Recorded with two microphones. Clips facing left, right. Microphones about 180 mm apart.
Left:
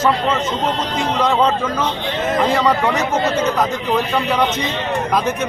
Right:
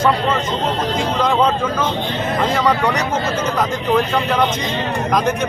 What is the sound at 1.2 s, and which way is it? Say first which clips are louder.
Speech: even; centre (ahead or behind).